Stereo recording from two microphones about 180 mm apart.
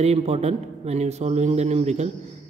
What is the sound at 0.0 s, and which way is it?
A man's voice, 35° right (ahead or behind).